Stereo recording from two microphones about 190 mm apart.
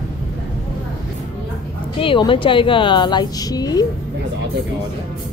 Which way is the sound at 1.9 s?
25° left (ahead or behind).